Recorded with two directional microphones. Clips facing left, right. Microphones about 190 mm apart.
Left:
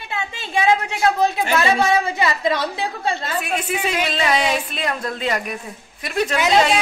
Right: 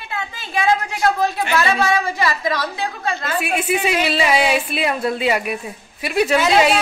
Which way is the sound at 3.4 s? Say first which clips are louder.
Right 3 dB; 10° right (ahead or behind).